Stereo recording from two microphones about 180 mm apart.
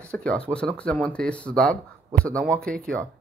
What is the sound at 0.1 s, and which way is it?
Speech, 5° left (ahead or behind).